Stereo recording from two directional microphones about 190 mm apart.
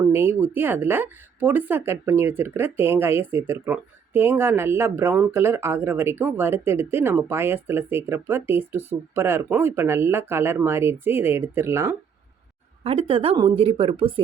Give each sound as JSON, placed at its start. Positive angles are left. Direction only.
{"t": 0.0, "sound": "speech", "side_deg": -10}
{"t": 12.8, "sound": "a woman's voice", "side_deg": -30}